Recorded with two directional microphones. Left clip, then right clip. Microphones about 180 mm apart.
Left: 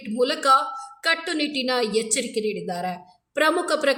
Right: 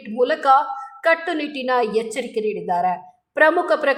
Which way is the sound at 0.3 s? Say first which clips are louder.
Right 3 dB; 35° left (ahead or behind).